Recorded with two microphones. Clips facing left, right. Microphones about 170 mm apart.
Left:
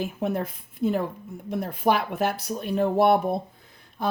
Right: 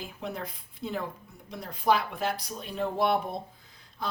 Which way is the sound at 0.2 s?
50° left (ahead or behind).